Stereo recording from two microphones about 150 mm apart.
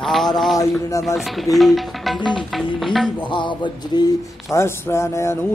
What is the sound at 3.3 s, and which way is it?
Music, 30° left (ahead or behind).